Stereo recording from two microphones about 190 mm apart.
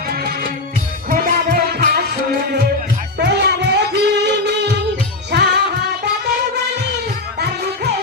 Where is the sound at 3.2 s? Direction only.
65° right (ahead or behind).